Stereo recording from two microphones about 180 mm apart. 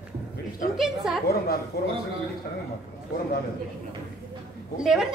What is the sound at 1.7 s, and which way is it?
Speech, 60° left (ahead or behind).